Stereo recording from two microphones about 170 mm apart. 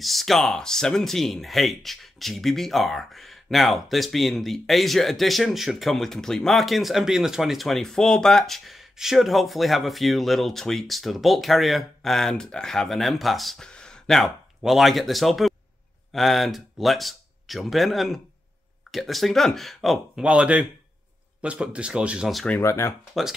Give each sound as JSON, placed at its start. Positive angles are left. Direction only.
{"t": 0.0, "sound": "speech", "side_deg": 0}
{"t": 22.6, "sound": "speech", "side_deg": 15}